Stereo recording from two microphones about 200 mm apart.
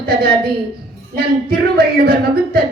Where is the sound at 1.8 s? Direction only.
50° right (ahead or behind).